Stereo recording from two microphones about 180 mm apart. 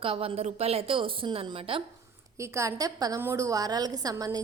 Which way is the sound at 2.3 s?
15° right (ahead or behind).